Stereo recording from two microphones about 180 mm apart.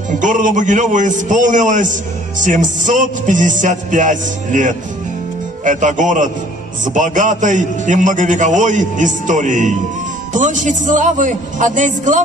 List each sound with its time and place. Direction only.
0.1 s a man's voice: 45° right (ahead or behind)